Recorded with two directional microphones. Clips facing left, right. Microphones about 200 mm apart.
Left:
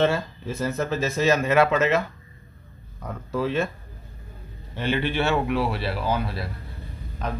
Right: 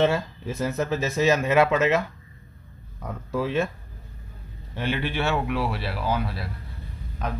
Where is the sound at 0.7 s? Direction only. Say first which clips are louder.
Even; 15° right (ahead or behind).